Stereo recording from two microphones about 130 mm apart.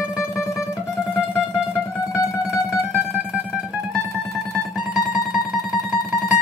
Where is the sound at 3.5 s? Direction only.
5° right (ahead or behind).